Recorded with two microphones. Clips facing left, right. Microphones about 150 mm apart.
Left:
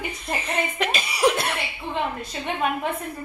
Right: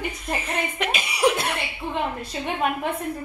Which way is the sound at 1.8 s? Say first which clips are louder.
Right 2 dB; 35° right (ahead or behind).